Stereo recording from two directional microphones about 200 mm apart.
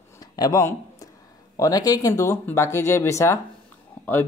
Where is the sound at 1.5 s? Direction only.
15° left (ahead or behind).